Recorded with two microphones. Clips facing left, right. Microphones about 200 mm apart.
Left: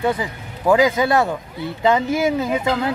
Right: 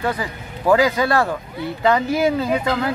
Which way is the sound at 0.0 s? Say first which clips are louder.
Left 2 dB; 20° left (ahead or behind).